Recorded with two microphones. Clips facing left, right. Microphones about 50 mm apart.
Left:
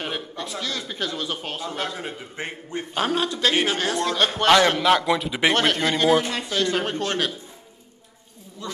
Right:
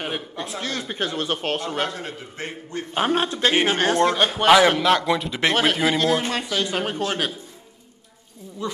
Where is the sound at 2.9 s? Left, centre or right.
Centre.